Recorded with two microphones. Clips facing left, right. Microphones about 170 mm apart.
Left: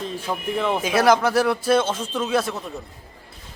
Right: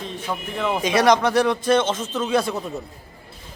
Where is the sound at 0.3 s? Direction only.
10° left (ahead or behind).